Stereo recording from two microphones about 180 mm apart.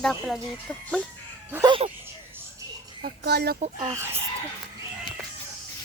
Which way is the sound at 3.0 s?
60° right (ahead or behind).